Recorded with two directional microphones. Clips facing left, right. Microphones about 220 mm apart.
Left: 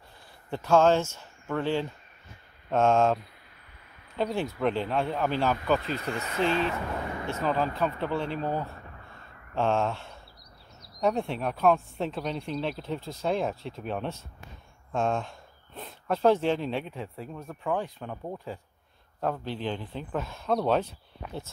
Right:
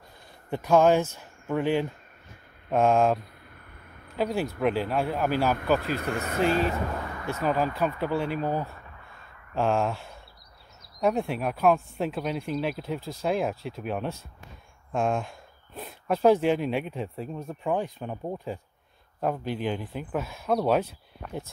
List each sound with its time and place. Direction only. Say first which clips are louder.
0.5 s speech: right 1 dB; 15° right (ahead or behind)
4.2 s speech: right 2 dB; 5° right (ahead or behind)
5.8 s speech: right 3 dB; 55° right (ahead or behind)
7.2 s a sound: even; 25° left (ahead or behind)
7.4 s speech: right 2 dB; 10° right (ahead or behind)